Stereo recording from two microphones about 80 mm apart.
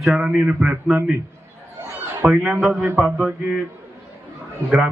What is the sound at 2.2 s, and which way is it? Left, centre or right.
Speech, centre.